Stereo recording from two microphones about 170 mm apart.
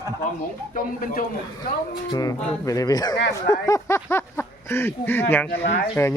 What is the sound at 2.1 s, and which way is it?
Speech, 20° left (ahead or behind).